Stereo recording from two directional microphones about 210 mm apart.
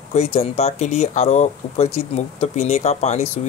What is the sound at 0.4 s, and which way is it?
Speech, 30° left (ahead or behind).